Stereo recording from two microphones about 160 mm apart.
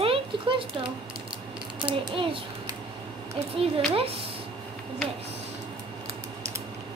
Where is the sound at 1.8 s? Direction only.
30° right (ahead or behind).